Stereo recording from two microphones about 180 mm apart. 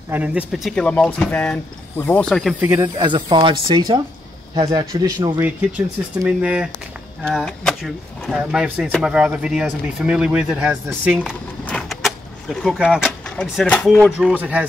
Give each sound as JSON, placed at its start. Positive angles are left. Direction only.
{"t": 0.1, "sound": "speech", "side_deg": -10}
{"t": 2.6, "sound": "speech", "side_deg": -15}
{"t": 6.2, "sound": "speech", "side_deg": -5}
{"t": 7.2, "sound": "speech", "side_deg": 5}
{"t": 11.6, "sound": "vehicle", "side_deg": 0}
{"t": 13.8, "sound": "speech", "side_deg": 0}